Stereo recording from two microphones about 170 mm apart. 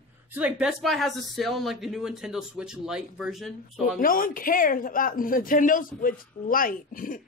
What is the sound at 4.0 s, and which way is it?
Speech, 55° left (ahead or behind).